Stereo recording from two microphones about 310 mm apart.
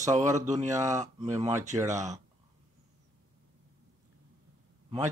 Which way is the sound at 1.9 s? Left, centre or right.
Right.